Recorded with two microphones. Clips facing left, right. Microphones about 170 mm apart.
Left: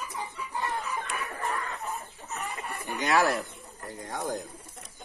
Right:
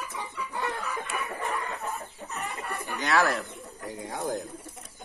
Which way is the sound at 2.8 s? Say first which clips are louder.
Left 1 dB; 15° left (ahead or behind).